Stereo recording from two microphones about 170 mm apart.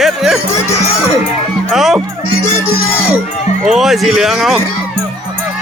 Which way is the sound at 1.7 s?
Centre (ahead or behind).